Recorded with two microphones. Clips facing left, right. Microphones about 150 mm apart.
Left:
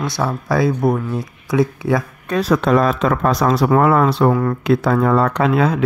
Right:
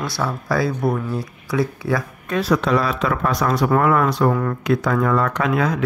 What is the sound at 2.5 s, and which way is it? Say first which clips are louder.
Speech: left 4 dB; 45° left (ahead or behind).